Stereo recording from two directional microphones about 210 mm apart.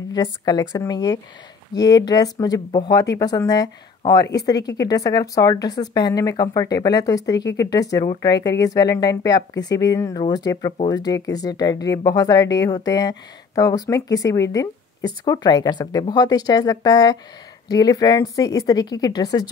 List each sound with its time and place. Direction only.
0.1 s speech: 20° left (ahead or behind)